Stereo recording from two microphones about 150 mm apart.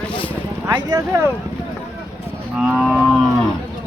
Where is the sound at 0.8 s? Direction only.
20° right (ahead or behind).